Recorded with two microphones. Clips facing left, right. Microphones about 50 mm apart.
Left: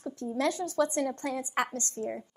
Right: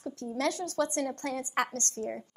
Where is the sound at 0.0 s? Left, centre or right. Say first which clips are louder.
Left 2 dB; left.